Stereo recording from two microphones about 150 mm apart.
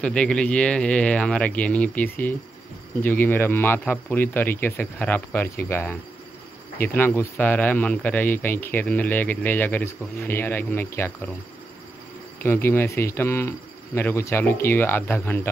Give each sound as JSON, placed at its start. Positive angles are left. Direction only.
{"t": 0.0, "sound": "a man's voice", "side_deg": 5}
{"t": 12.4, "sound": "a man's voice", "side_deg": 15}